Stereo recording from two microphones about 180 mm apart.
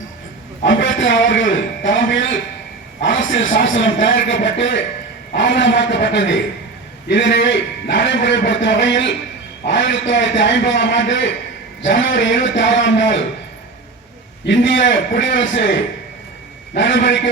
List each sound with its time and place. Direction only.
0.6 s a man's voice: 90° left
14.4 s a man's voice: 90° left
16.7 s a man's voice: 80° left